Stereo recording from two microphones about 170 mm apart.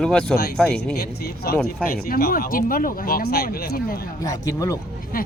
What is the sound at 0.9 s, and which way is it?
A man's voice, 65° left (ahead or behind).